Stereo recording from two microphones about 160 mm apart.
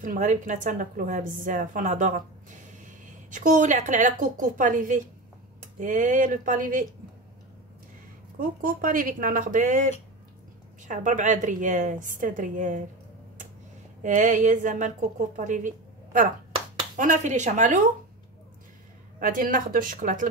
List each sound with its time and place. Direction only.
0.0 s a woman's voice: 55° right (ahead or behind)
8.4 s a woman's voice: 60° right (ahead or behind)
14.0 s a woman's voice: 50° right (ahead or behind)
19.1 s speech: 60° right (ahead or behind)